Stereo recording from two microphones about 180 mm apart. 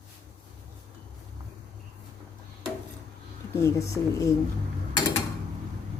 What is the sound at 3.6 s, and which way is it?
Speech, 15° left (ahead or behind).